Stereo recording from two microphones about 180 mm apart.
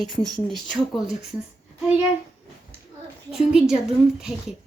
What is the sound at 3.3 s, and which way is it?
Speech, centre (ahead or behind).